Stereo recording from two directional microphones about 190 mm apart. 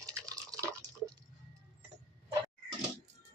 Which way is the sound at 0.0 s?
15° right (ahead or behind).